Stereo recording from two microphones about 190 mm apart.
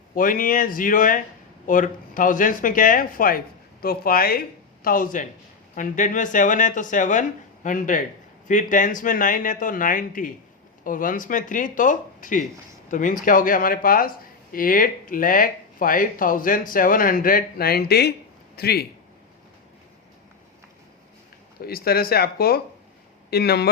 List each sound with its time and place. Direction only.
0.1 s a man's voice: 45° left (ahead or behind)
21.6 s speech: 50° left (ahead or behind)